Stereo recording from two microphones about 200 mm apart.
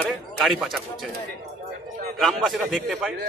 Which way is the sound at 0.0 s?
5° left (ahead or behind).